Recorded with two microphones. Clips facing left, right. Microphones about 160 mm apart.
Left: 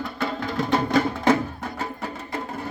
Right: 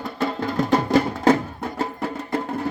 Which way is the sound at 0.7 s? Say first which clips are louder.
Right 2 dB; 40° right (ahead or behind).